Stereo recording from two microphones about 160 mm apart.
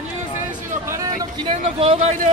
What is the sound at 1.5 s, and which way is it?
Speech, 35° right (ahead or behind).